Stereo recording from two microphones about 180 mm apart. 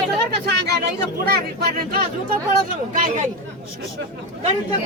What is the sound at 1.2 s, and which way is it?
Speech, 55° right (ahead or behind).